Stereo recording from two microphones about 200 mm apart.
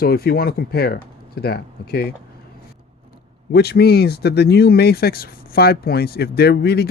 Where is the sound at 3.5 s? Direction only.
55° left (ahead or behind).